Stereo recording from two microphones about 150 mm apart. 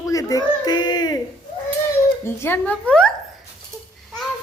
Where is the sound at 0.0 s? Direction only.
20° left (ahead or behind).